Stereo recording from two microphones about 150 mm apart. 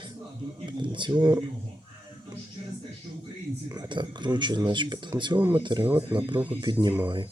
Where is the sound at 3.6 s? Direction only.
30° right (ahead or behind).